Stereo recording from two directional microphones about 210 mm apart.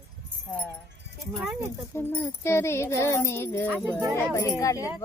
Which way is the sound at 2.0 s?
10° left (ahead or behind).